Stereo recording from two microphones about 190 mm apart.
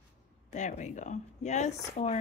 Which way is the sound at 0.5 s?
40° left (ahead or behind).